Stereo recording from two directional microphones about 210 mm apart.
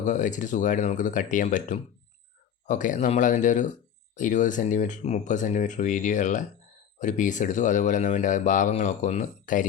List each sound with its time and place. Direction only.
0.0 s speech: 35° left (ahead or behind)